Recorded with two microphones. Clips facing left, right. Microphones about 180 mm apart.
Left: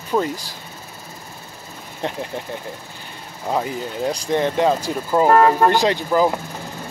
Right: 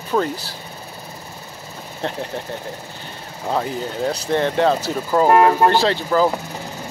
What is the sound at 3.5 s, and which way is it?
Speech, 10° left (ahead or behind).